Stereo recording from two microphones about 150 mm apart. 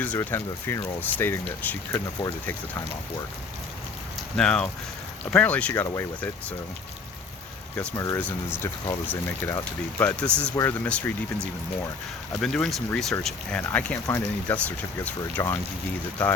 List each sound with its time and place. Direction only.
0.0 s speech: 10° left (ahead or behind)
4.4 s speech: 5° left (ahead or behind)
7.9 s speech: 20° left (ahead or behind)
12.4 s speech: 5° left (ahead or behind)